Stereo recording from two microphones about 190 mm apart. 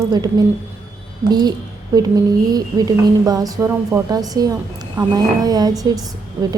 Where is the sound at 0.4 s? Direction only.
20° right (ahead or behind).